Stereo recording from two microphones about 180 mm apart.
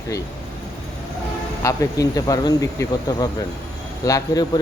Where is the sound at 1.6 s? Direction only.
20° left (ahead or behind).